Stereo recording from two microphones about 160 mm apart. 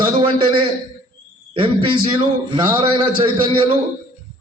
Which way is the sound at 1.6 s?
35° right (ahead or behind).